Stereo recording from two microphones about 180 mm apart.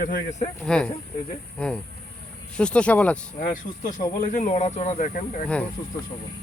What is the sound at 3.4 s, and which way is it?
Speech, 50° left (ahead or behind).